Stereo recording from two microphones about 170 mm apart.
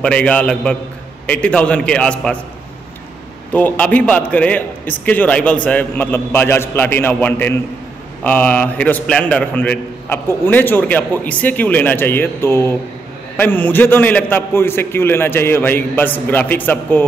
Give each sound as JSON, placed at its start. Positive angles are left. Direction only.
{"t": 0.0, "sound": "a man's voice", "side_deg": 5}
{"t": 3.5, "sound": "a man's voice", "side_deg": 10}